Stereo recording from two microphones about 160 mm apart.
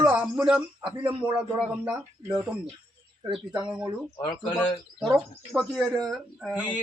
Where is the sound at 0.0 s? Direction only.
5° right (ahead or behind).